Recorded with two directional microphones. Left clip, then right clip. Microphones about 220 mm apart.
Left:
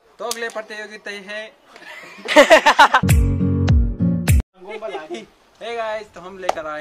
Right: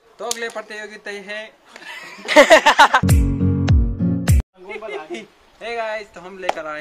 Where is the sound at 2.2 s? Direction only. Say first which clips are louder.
Even; 5° left (ahead or behind).